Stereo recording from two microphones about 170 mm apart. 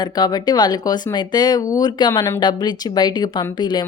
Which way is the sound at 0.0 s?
25° left (ahead or behind).